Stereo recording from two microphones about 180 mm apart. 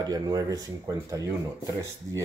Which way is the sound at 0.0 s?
20° right (ahead or behind).